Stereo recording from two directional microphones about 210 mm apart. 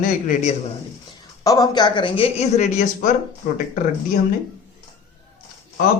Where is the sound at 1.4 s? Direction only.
15° left (ahead or behind); by 3.1 s 35° left (ahead or behind).